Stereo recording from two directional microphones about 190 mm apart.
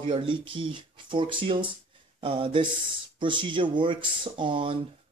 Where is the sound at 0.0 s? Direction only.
25° right (ahead or behind).